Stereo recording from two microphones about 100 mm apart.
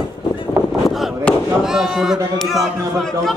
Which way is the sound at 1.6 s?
5° right (ahead or behind).